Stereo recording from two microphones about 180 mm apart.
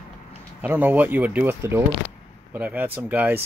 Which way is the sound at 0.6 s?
10° right (ahead or behind).